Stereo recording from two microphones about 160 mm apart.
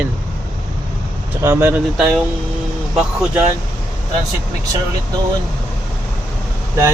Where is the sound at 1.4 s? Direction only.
15° right (ahead or behind).